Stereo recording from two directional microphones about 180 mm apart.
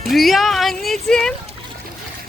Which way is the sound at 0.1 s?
Centre (ahead or behind).